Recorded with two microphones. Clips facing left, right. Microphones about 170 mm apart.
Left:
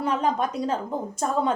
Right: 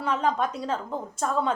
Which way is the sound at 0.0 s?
15° left (ahead or behind).